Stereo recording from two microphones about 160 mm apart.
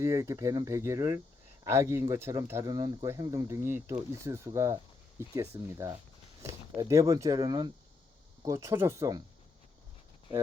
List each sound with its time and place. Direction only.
0.0 s speech: 20° right (ahead or behind)